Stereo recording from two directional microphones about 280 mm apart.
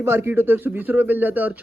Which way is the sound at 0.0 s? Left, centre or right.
Centre.